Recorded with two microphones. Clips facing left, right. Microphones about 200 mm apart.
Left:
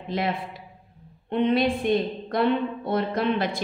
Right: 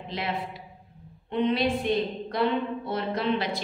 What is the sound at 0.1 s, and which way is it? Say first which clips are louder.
A woman's voice: left 5 dB; 50° left (ahead or behind).